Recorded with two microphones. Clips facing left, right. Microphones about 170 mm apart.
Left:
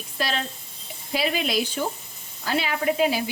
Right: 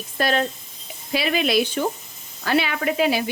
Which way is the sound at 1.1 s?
75° right (ahead or behind).